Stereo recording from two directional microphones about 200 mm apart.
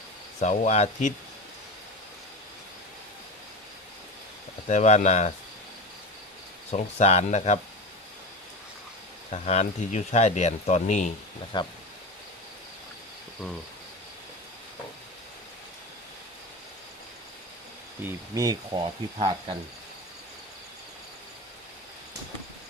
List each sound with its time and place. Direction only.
0.3 s speech: 35° left (ahead or behind)
4.7 s speech: 35° left (ahead or behind)
6.7 s speech: 35° left (ahead or behind)
9.3 s speech: 35° left (ahead or behind)
11.5 s speech: 25° left (ahead or behind)
18.3 s speech: 20° right (ahead or behind)